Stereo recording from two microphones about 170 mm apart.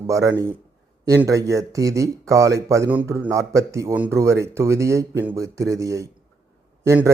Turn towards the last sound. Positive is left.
turn(degrees=-15)  # may be behind; listen again after turning